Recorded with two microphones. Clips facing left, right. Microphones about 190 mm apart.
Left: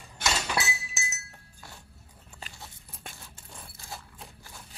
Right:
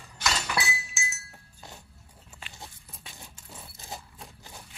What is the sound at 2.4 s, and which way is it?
Dog, 40° left (ahead or behind).